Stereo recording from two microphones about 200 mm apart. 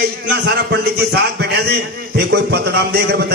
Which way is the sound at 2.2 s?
55° right (ahead or behind).